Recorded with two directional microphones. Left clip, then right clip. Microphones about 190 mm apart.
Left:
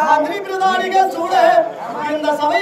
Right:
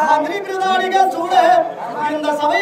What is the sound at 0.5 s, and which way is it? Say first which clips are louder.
Speech: even; 5° right (ahead or behind).